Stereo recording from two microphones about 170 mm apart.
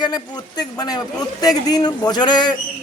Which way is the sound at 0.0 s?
25° left (ahead or behind).